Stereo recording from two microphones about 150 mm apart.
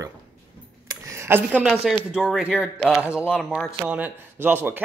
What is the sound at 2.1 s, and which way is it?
Speech, 5° right (ahead or behind).